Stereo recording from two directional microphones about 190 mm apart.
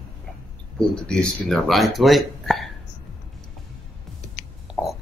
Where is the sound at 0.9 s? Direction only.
5° left (ahead or behind).